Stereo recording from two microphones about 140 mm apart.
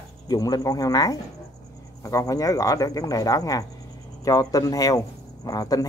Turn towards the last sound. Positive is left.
turn(degrees=25)  # may be behind; listen again after turning